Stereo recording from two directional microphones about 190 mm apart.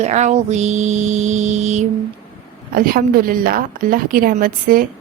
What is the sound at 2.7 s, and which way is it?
A woman's voice, 50° right (ahead or behind).